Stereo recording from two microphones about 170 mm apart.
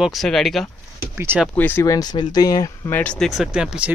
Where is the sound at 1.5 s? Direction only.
10° left (ahead or behind).